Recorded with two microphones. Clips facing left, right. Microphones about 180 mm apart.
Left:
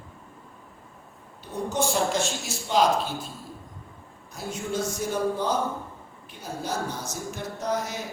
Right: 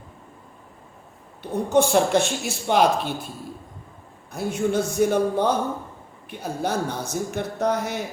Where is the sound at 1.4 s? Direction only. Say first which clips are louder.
Right 7 dB; 60° right (ahead or behind).